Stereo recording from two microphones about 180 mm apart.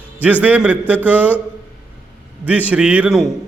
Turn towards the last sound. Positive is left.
turn(degrees=-5)  # may be behind; listen again after turning